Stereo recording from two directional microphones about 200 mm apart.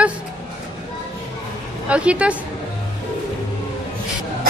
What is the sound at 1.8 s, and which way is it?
Speech, 5° right (ahead or behind).